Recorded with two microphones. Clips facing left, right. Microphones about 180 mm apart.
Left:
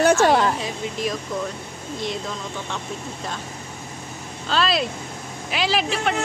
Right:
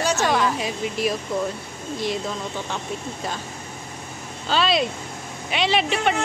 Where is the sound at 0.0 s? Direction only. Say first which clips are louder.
Left 6 dB; 55° left (ahead or behind).